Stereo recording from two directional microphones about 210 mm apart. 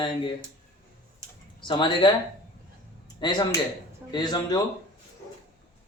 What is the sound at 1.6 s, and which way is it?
Speech, 20° left (ahead or behind).